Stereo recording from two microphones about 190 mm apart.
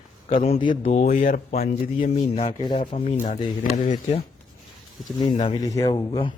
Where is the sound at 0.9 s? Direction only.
45° left (ahead or behind).